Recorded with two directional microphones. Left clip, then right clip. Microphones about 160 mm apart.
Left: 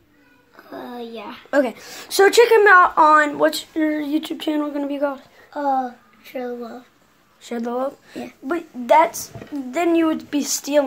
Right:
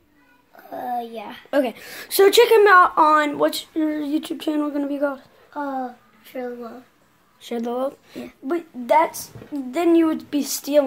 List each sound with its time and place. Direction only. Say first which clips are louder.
0.7 s a sound: right 6 dB; 40° right (ahead or behind)
1.5 s a woman's voice: left 2 dB; 10° right (ahead or behind)
6.3 s speech: left 2 dB; 5° right (ahead or behind)
7.4 s speech: left 1 dB; 20° right (ahead or behind)
8.3 s a woman's voice: even; 5° right (ahead or behind)